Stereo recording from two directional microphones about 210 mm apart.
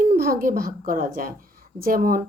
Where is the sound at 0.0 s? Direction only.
40° right (ahead or behind).